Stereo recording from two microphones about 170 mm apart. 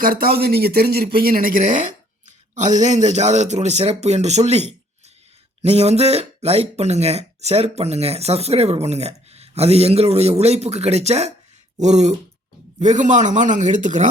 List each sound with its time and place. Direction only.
0.0 s speech: 60° right (ahead or behind)